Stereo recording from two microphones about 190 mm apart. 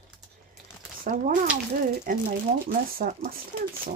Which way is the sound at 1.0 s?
45° right (ahead or behind).